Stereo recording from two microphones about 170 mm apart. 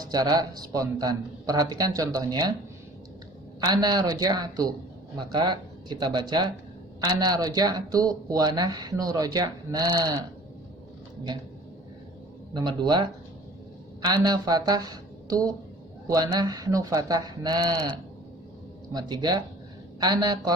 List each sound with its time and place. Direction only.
0.0 s speech: 25° right (ahead or behind)
3.6 s speech: 25° right (ahead or behind)
12.5 s speech: 25° right (ahead or behind)